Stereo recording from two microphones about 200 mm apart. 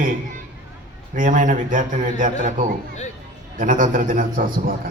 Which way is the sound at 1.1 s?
40° right (ahead or behind).